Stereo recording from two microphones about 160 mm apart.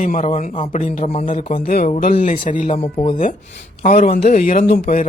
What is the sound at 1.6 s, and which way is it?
Speech, 60° left (ahead or behind).